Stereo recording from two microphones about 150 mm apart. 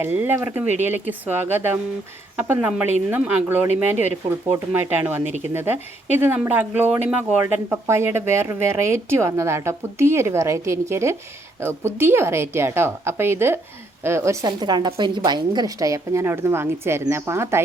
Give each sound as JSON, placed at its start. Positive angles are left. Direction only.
{"t": 0.0, "sound": "a woman's voice", "side_deg": -15}